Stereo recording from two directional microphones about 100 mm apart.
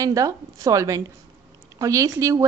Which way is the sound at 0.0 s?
35° right (ahead or behind).